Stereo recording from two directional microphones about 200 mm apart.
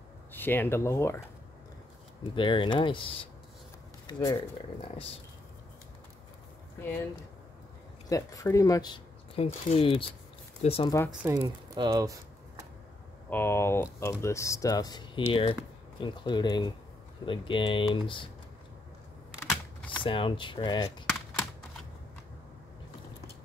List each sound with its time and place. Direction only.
0.3 s speech: 10° left (ahead or behind)
2.3 s speech: 25° left (ahead or behind)
8.1 s speech: 15° left (ahead or behind)
11.1 s speech: 15° right (ahead or behind)
13.3 s speech: 10° left (ahead or behind)
19.5 s typing: 5° left (ahead or behind)
20.0 s speech: 25° left (ahead or behind)